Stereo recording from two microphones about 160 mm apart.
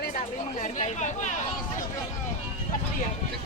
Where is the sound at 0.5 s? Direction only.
50° left (ahead or behind).